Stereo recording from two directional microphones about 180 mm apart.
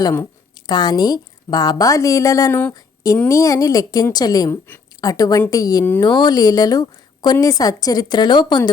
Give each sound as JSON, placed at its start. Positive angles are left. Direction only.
{"t": 0.0, "sound": "speech", "side_deg": 15}
{"t": 2.7, "sound": "a sound", "side_deg": 20}
{"t": 3.2, "sound": "speech", "side_deg": 15}